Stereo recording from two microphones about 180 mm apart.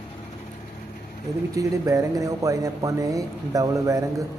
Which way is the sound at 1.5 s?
20° right (ahead or behind).